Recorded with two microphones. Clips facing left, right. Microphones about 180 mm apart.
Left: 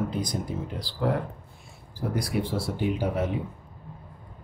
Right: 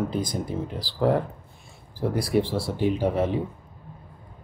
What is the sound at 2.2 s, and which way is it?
Speech, 30° right (ahead or behind).